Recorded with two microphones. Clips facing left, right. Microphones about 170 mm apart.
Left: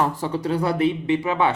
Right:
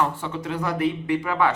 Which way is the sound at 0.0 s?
35° left (ahead or behind).